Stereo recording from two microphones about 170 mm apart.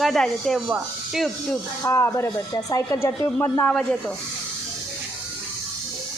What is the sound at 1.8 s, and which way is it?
Speech, 15° left (ahead or behind).